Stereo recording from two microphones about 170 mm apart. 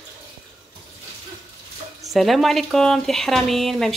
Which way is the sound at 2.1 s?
Centre (ahead or behind).